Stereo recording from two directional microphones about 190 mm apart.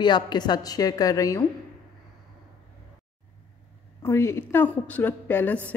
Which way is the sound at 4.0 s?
15° left (ahead or behind).